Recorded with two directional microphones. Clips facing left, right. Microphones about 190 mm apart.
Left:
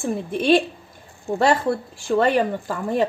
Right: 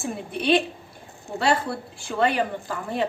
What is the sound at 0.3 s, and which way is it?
A woman's voice, 45° left (ahead or behind).